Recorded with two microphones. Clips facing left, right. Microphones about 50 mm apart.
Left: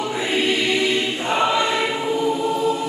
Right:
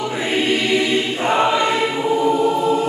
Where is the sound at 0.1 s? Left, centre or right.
Centre.